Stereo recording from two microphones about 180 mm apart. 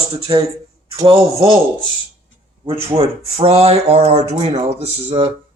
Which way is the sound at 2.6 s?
30° right (ahead or behind).